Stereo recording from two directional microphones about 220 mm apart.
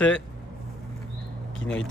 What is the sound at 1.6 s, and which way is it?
Speech, 60° left (ahead or behind).